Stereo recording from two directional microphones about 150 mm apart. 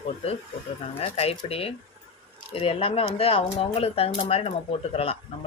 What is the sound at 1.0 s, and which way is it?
Speech, 40° left (ahead or behind).